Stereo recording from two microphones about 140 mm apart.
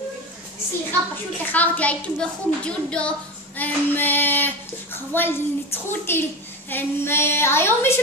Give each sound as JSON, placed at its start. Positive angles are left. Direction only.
{"t": 1.5, "sound": "speech", "side_deg": 10}